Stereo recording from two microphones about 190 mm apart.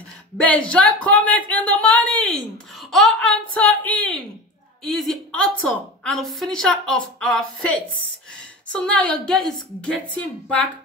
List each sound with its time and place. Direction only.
0.4 s a woman's voice: 5° left (ahead or behind)